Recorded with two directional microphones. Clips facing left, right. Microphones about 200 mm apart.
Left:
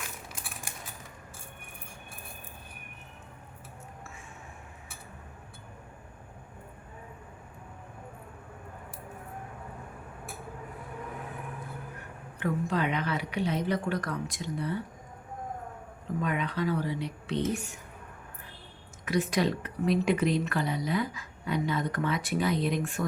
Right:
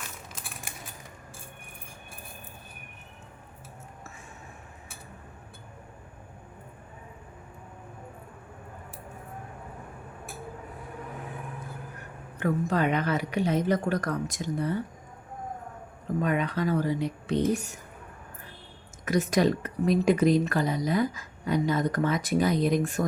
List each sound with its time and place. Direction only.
12.4 s a woman's voice: 45° right (ahead or behind)
16.2 s a woman's voice: 45° right (ahead or behind)
19.0 s speech: 45° right (ahead or behind)